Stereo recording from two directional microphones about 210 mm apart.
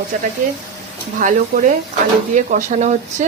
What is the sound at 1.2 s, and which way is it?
Speech, 35° right (ahead or behind).